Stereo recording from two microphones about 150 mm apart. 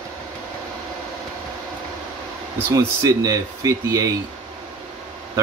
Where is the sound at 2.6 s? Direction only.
25° right (ahead or behind).